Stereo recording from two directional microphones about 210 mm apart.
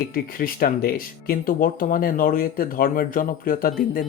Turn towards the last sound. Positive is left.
turn(degrees=40)  # may be behind; listen again after turning